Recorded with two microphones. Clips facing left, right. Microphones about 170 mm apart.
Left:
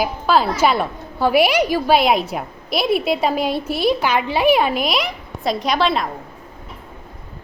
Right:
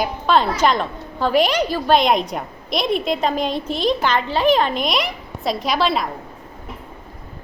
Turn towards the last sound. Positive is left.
turn(degrees=0)  # may be behind; listen again after turning